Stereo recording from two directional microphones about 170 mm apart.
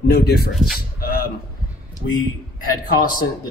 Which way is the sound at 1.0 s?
60° left (ahead or behind).